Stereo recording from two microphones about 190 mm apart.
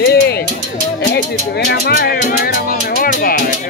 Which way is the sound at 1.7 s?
55° left (ahead or behind).